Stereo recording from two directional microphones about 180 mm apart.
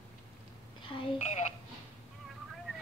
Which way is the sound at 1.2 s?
40° left (ahead or behind).